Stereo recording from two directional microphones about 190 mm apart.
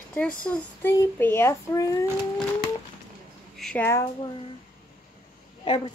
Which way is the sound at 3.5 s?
5° left (ahead or behind).